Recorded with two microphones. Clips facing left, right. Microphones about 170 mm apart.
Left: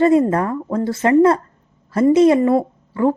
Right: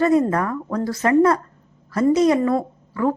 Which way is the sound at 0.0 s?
25° left (ahead or behind).